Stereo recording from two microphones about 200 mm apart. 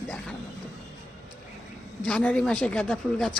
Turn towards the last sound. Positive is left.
turn(degrees=5)  # may be behind; listen again after turning